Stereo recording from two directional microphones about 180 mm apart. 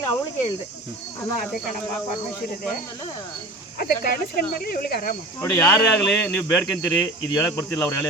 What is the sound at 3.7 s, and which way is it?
Speech, 55° left (ahead or behind).